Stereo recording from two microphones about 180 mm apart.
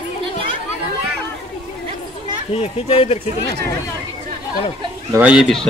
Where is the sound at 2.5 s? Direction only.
35° left (ahead or behind).